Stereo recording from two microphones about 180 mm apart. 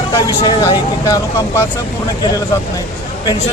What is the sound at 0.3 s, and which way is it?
Speech, 20° left (ahead or behind).